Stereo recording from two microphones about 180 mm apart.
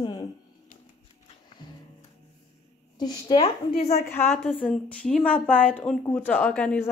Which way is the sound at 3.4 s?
35° left (ahead or behind).